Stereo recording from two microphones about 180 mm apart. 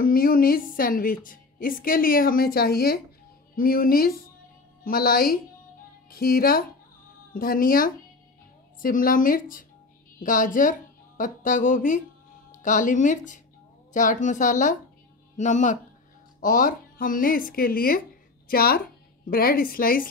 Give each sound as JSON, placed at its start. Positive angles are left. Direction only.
{"t": 0.0, "sound": "a woman's voice", "side_deg": 55}